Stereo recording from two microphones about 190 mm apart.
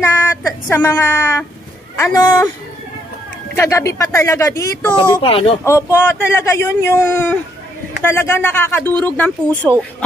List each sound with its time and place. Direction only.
0.0 s speech: 15° left (ahead or behind)
3.5 s speech: 15° left (ahead or behind)
5.2 s speech: 30° left (ahead or behind)
5.6 s speech: 15° left (ahead or behind)